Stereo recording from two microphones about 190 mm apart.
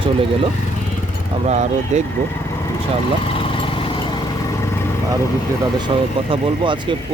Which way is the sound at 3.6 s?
25° left (ahead or behind).